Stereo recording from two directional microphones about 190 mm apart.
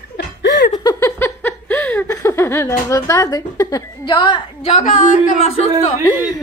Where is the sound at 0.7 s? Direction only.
15° left (ahead or behind); by 5.9 s 40° left (ahead or behind).